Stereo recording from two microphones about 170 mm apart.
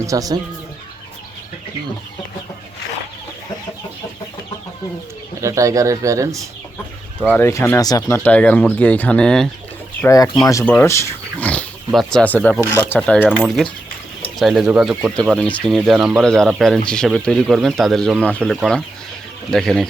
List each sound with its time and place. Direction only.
0.0 s speech: 20° right (ahead or behind)
5.4 s speech: 20° right (ahead or behind)
7.3 s speech: 15° left (ahead or behind)
10.0 s speech: 20° left (ahead or behind); by 15.1 s 5° right (ahead or behind)
15.1 s speech: 5° left (ahead or behind)